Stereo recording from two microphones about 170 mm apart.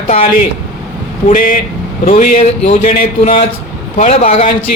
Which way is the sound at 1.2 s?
50° left (ahead or behind).